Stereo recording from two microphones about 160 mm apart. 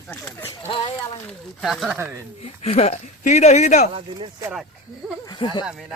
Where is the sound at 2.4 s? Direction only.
45° left (ahead or behind).